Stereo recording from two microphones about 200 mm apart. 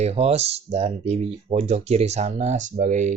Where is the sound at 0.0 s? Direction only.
30° right (ahead or behind).